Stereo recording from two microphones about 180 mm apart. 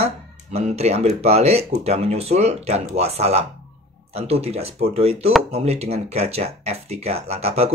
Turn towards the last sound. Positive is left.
turn(degrees=-35)  # may be behind; listen again after turning